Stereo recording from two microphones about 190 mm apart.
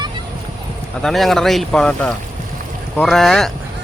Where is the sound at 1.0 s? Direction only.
Centre (ahead or behind).